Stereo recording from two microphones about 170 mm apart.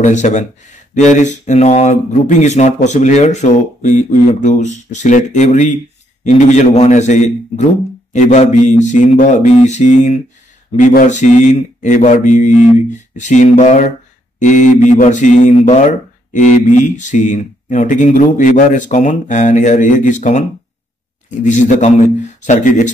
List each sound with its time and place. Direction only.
0.0 s speech: 45° left (ahead or behind)
21.5 s speech: 45° left (ahead or behind)